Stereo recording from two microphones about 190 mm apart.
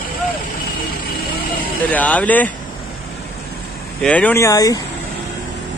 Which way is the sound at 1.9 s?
10° left (ahead or behind).